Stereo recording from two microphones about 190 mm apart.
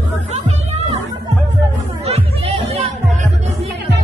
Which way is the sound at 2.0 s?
35° right (ahead or behind).